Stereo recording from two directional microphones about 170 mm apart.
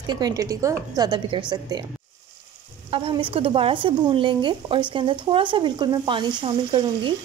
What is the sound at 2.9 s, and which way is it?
A woman's voice, 30° right (ahead or behind).